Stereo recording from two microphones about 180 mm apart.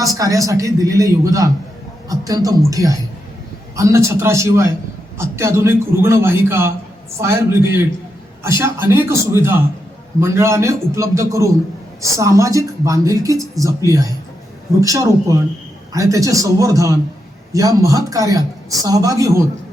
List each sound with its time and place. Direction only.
0.0 s a man's voice: 20° right (ahead or behind)